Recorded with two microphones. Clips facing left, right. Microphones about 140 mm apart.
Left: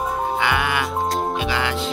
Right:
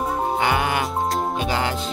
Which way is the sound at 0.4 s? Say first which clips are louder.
Right 1 dB; 40° right (ahead or behind).